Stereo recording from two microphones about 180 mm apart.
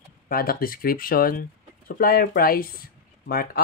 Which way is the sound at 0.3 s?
55° left (ahead or behind).